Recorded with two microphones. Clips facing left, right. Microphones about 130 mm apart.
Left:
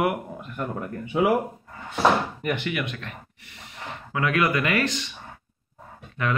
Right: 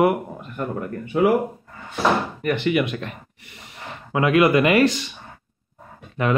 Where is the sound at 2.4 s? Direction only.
10° left (ahead or behind).